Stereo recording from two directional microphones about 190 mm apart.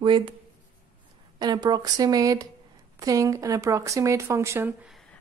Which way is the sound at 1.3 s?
20° right (ahead or behind).